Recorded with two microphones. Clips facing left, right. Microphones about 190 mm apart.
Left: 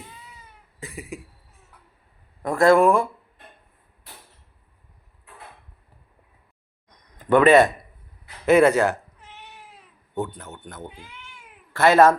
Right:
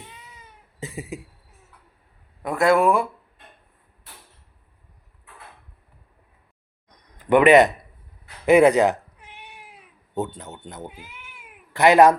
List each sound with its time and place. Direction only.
0.8 s cough: 25° right (ahead or behind)
2.4 s speech: centre (ahead or behind)
7.3 s a man's voice: 15° right (ahead or behind)
8.4 s cat: 15° right (ahead or behind)
10.2 s speech: 20° right (ahead or behind)
10.8 s cat: 5° right (ahead or behind)